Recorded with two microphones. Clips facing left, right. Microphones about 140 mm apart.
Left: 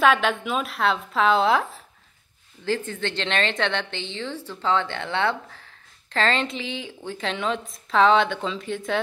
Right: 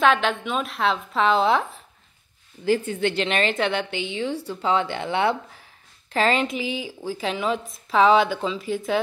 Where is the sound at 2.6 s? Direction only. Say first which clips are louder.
Right 5 dB; 10° right (ahead or behind).